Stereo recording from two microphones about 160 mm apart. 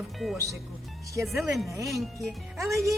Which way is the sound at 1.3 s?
Centre (ahead or behind).